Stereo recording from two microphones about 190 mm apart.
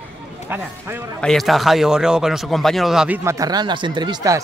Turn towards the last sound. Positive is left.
turn(degrees=-20)  # may be behind; listen again after turning